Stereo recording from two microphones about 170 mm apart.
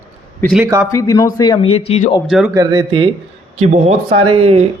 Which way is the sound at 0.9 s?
20° left (ahead or behind).